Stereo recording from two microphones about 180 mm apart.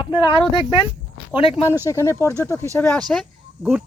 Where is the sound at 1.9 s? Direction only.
15° left (ahead or behind); by 3.8 s 5° right (ahead or behind).